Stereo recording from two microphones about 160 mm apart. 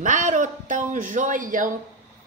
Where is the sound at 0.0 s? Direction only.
55° right (ahead or behind).